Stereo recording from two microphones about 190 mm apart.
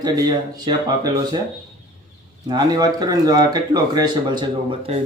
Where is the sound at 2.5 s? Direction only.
20° right (ahead or behind).